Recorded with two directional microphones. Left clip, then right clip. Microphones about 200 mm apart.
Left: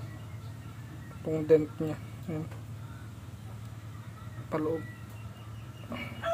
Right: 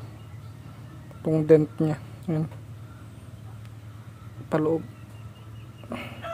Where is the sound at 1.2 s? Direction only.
35° right (ahead or behind).